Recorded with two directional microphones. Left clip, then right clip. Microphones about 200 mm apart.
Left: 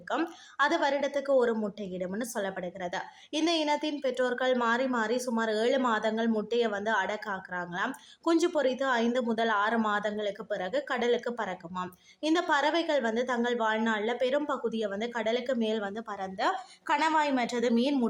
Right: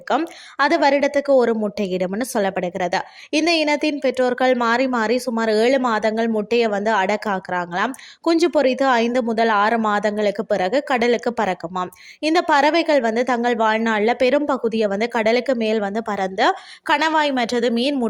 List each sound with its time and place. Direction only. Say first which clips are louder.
0.1 s speech: right 10 dB; 40° right (ahead or behind)